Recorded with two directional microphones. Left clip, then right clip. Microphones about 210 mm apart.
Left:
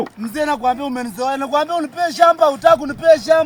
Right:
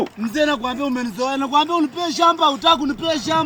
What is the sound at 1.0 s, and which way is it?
A man's voice, 15° left (ahead or behind).